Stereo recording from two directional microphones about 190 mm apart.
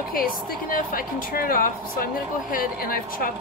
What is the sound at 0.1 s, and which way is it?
A woman's voice, 50° left (ahead or behind).